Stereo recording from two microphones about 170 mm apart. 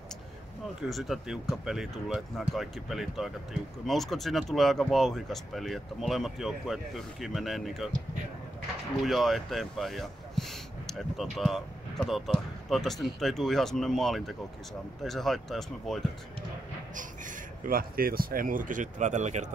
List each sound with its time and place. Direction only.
0.8 s speech: centre (ahead or behind)
9.0 s speech: centre (ahead or behind)
17.6 s speech: 60° right (ahead or behind)